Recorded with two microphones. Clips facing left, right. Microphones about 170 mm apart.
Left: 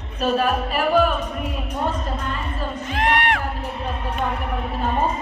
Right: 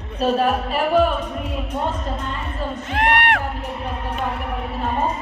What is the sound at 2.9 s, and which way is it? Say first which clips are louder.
Music: right 2 dB; 60° right (ahead or behind).